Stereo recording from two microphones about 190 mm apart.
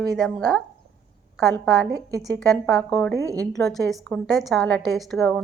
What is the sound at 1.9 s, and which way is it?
Speech, 20° right (ahead or behind).